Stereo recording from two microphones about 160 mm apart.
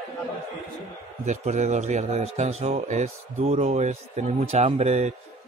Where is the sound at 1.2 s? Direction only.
45° right (ahead or behind).